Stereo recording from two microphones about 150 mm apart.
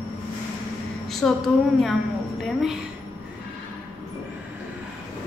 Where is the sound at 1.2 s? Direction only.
10° left (ahead or behind).